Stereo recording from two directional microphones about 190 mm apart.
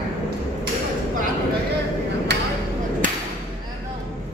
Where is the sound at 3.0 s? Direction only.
45° right (ahead or behind).